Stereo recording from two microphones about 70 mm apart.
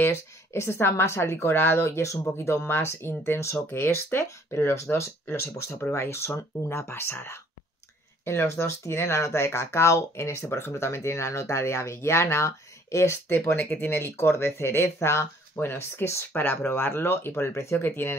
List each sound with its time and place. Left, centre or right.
0.0 s a woman's voice: left
13.3 s a woman's voice: left